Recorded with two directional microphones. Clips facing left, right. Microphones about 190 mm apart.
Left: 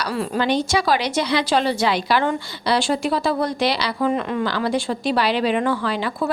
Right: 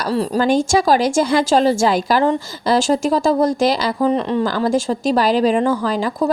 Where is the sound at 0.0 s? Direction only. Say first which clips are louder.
Right 5 dB; 35° right (ahead or behind).